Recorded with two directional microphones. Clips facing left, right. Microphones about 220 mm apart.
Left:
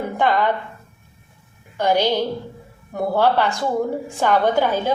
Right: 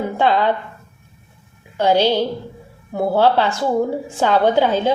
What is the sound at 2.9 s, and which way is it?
A woman's voice, 10° right (ahead or behind).